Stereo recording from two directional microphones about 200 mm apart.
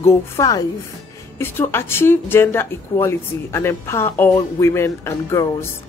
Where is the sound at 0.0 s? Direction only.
20° left (ahead or behind).